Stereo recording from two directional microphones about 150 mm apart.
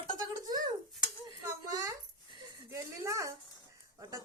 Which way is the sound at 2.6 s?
20° right (ahead or behind).